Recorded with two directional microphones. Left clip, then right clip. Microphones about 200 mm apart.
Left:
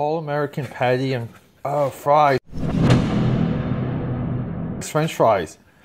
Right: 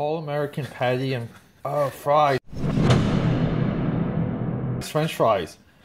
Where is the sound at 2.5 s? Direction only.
Centre (ahead or behind).